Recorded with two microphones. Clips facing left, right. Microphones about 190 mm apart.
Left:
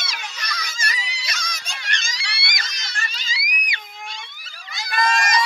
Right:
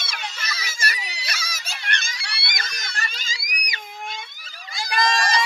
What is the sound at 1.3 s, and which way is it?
Screaming, 5° right (ahead or behind).